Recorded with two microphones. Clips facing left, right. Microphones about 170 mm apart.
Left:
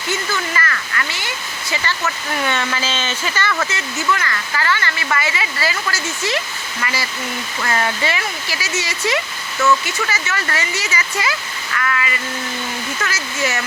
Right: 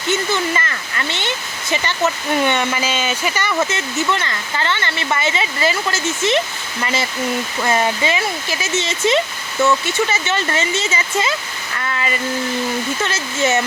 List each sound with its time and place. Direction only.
0.1 s speech: 25° right (ahead or behind)